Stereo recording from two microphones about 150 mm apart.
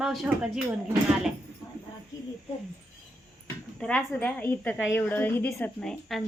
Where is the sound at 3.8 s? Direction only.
10° left (ahead or behind).